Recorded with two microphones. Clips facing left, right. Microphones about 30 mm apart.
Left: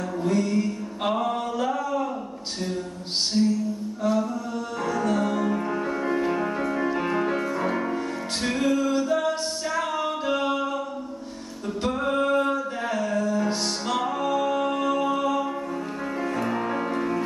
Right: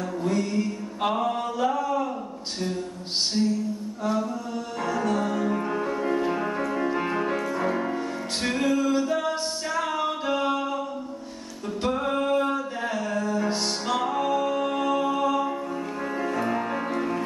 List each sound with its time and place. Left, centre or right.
0.2 s music: centre
3.3 s music: centre
4.8 s music: centre
10.3 s a sound: centre
11.8 s music: centre